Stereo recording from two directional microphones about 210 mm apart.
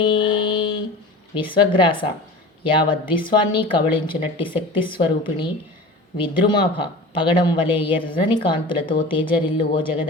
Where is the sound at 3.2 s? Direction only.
20° left (ahead or behind).